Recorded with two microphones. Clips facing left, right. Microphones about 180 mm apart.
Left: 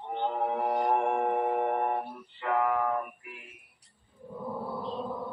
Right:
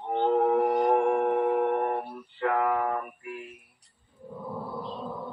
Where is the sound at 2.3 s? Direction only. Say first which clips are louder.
Right 2 dB; 60° right (ahead or behind).